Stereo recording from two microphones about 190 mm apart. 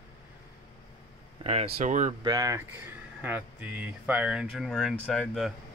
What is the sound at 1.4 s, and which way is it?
Speech, 35° right (ahead or behind).